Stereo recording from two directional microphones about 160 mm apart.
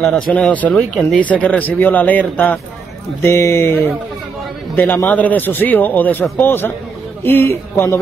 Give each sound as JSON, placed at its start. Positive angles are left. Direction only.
{"t": 0.3, "sound": "speech", "side_deg": 5}